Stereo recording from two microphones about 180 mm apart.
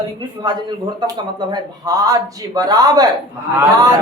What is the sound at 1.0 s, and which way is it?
Speech, 20° right (ahead or behind).